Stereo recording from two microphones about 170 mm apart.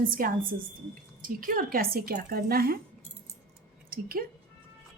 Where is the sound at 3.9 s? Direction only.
60° right (ahead or behind).